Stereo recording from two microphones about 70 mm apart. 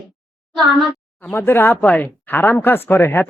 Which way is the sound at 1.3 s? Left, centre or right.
Left.